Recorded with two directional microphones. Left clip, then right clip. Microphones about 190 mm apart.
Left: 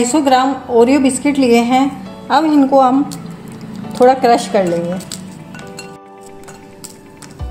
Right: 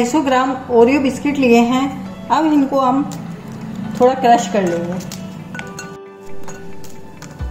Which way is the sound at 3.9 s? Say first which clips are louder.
Left 2 dB; 35° left (ahead or behind).